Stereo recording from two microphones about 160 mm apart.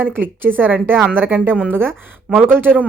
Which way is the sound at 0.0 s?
10° right (ahead or behind).